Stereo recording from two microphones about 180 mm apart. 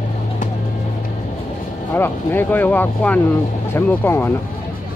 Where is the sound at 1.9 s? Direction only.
10° left (ahead or behind).